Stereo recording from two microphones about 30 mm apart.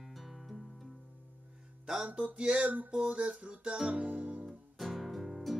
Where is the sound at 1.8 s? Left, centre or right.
Centre.